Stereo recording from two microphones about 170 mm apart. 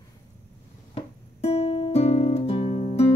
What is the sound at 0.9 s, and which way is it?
Music, 35° left (ahead or behind).